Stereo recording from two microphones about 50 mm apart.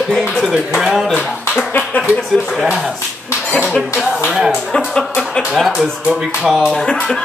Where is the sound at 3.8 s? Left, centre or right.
Centre.